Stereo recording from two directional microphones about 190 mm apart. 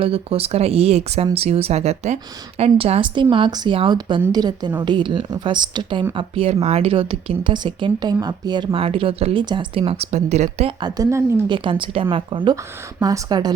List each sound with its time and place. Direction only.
0.0 s speech: 30° right (ahead or behind)